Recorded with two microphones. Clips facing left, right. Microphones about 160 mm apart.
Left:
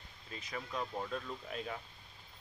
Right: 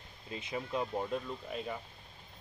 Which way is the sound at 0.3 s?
25° right (ahead or behind).